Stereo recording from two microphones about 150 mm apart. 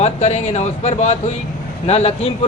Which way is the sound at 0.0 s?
50° left (ahead or behind).